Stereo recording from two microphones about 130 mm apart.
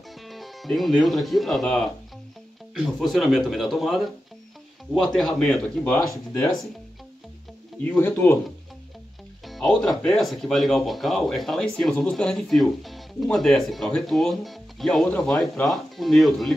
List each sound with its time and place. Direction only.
0.3 s speech: centre (ahead or behind)
7.8 s speech: 15° left (ahead or behind)
9.5 s speech: 5° left (ahead or behind)